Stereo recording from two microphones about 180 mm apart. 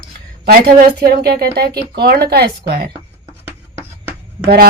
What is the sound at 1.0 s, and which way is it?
A woman's voice, 60° right (ahead or behind).